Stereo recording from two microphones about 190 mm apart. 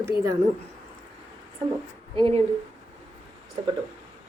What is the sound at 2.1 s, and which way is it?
Speech, 25° right (ahead or behind).